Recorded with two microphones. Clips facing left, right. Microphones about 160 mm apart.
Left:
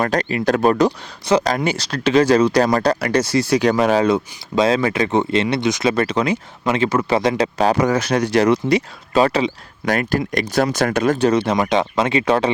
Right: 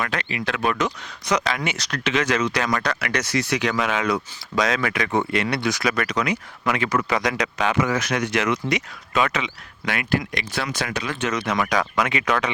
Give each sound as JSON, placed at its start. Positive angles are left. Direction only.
{"t": 0.0, "sound": "speech", "side_deg": 40}
{"t": 11.2, "sound": "speech", "side_deg": 30}